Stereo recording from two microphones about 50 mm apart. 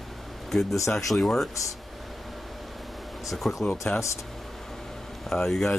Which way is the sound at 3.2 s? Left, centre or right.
Centre.